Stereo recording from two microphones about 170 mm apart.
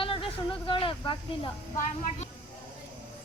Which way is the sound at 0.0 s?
30° left (ahead or behind).